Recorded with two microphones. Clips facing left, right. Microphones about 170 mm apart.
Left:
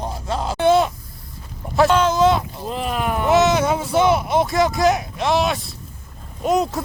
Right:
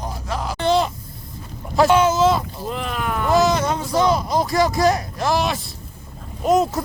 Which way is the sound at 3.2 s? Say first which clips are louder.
Left 1 dB; centre (ahead or behind).